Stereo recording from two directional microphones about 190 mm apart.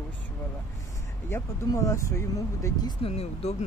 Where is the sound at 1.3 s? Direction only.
15° left (ahead or behind).